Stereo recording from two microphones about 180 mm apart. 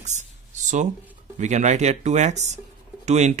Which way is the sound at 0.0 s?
40° right (ahead or behind).